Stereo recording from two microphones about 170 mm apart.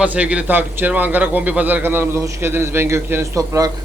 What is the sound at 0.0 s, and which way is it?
A man's voice, 5° right (ahead or behind).